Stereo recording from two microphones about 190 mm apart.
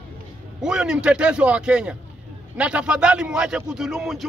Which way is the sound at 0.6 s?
5° right (ahead or behind).